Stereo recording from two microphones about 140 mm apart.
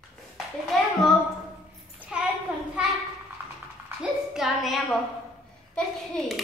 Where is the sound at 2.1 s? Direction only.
5° right (ahead or behind).